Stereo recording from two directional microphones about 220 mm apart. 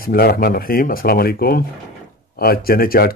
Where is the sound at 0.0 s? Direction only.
45° left (ahead or behind).